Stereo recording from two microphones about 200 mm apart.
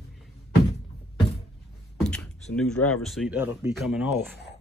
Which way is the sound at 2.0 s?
5° left (ahead or behind).